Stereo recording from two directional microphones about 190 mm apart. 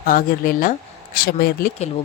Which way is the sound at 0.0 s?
50° left (ahead or behind).